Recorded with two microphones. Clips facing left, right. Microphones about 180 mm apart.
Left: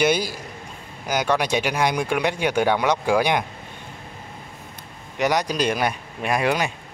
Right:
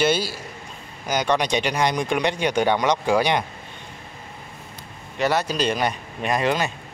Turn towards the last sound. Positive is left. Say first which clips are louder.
# even
turn(degrees=10)  # may be behind; listen again after turning